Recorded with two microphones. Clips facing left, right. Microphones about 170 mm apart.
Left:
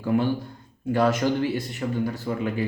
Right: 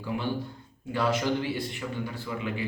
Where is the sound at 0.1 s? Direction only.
50° left (ahead or behind).